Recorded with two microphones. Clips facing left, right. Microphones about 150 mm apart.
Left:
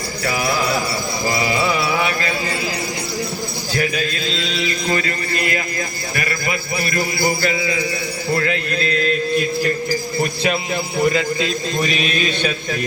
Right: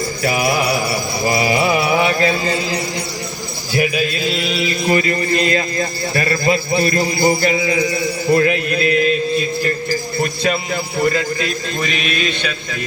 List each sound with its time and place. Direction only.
0.3 s mantra: 20° right (ahead or behind)
3.8 s mantra: 15° right (ahead or behind)
6.1 s a man's voice: 30° right (ahead or behind)
8.3 s mantra: 20° right (ahead or behind)
11.0 s a man's voice: 20° left (ahead or behind)